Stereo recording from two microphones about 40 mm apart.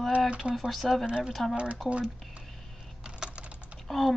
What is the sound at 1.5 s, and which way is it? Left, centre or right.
Speech, right.